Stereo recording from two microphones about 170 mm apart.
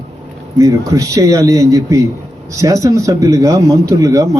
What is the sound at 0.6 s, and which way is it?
A man's voice, 20° right (ahead or behind).